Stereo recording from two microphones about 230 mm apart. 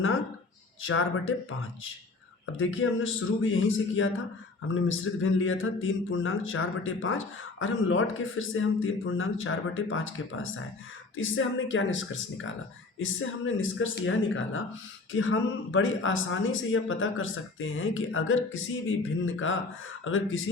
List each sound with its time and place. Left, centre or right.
0.8 s speech: left
2.6 s a man's voice: left